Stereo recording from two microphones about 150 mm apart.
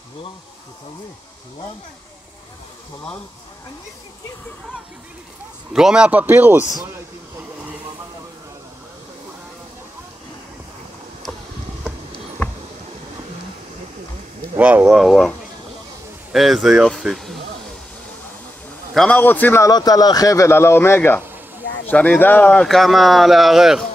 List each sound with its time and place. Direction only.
5.7 s speech: 5° right (ahead or behind)
12.4 s a sound: 10° left (ahead or behind)
14.6 s speech: 10° right (ahead or behind)
16.3 s speech: centre (ahead or behind)
18.9 s a man's voice: 10° left (ahead or behind)
19.7 s speech: 25° left (ahead or behind); by 23.9 s 5° right (ahead or behind)